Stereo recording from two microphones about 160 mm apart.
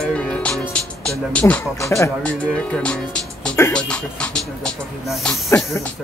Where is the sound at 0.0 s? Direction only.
5° left (ahead or behind).